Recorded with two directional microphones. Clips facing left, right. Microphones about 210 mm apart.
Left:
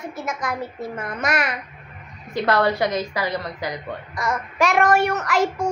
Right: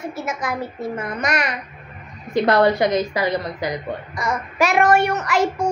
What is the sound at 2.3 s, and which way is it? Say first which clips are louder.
A woman's voice: right 4 dB; 20° right (ahead or behind).